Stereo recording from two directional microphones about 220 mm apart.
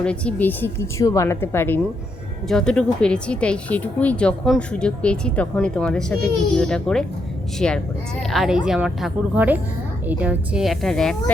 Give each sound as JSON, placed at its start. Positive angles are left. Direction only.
{"t": 0.0, "sound": "a woman's voice", "side_deg": 5}